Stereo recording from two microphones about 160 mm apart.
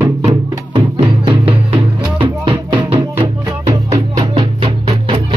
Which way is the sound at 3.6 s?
20° right (ahead or behind).